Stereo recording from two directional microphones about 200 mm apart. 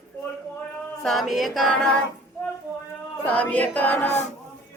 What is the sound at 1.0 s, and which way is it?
Female singing, centre (ahead or behind).